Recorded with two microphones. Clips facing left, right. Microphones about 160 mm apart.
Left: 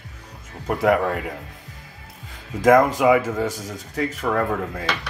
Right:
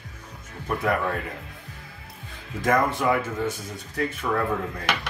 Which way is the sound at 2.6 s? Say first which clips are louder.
Left 7 dB; 90° left.